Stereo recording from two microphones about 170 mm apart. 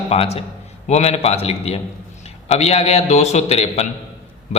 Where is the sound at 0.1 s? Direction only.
35° left (ahead or behind).